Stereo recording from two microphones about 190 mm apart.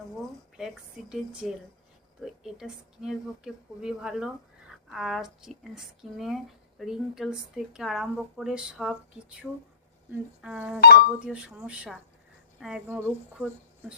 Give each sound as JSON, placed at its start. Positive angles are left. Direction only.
{"t": 0.2, "sound": "speech", "side_deg": 0}
{"t": 10.8, "sound": "speech", "side_deg": 55}
{"t": 11.3, "sound": "speech", "side_deg": -5}